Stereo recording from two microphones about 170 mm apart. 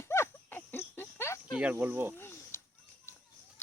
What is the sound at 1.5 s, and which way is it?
Speech, 10° right (ahead or behind).